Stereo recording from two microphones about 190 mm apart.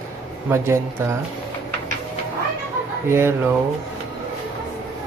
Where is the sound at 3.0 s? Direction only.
15° right (ahead or behind).